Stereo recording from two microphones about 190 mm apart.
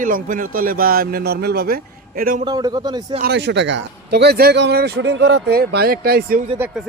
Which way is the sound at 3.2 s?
65° right (ahead or behind).